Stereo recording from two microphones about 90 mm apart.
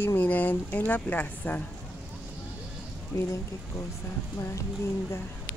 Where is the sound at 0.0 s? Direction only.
20° left (ahead or behind).